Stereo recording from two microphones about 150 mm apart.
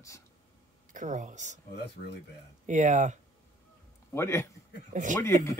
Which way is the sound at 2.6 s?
55° right (ahead or behind).